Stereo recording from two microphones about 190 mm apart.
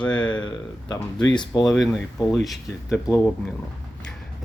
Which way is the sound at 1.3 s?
20° left (ahead or behind).